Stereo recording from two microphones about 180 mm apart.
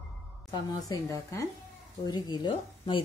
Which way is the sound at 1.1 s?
15° left (ahead or behind).